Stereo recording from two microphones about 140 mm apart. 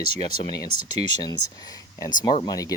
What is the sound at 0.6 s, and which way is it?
Speech, 75° left (ahead or behind).